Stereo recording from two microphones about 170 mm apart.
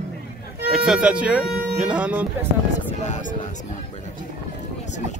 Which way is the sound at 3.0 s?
45° left (ahead or behind).